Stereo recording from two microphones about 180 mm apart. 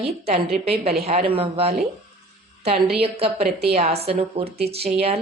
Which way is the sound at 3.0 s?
35° right (ahead or behind).